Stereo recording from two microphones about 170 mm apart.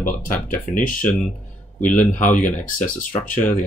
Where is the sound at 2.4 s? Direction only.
50° left (ahead or behind).